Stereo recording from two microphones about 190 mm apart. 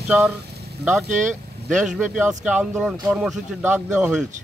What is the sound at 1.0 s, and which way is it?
Speech, 40° right (ahead or behind).